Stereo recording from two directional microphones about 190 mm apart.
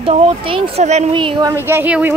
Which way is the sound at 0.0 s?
30° right (ahead or behind).